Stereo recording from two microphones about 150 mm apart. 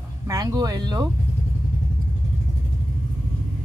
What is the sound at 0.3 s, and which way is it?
Speech, 20° right (ahead or behind).